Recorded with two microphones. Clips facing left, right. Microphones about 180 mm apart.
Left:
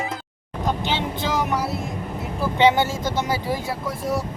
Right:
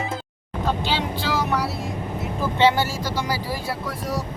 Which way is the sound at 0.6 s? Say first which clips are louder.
Even; 20° left (ahead or behind).